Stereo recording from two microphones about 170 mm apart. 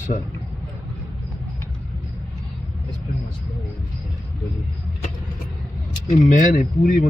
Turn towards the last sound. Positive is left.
turn(degrees=55)  # may be behind; listen again after turning